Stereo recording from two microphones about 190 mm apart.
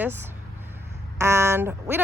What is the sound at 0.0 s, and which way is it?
Speech, 10° right (ahead or behind).